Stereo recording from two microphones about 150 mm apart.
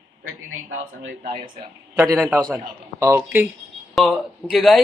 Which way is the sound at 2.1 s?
5° right (ahead or behind).